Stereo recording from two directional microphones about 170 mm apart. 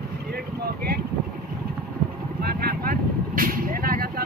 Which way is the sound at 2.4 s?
65° right (ahead or behind).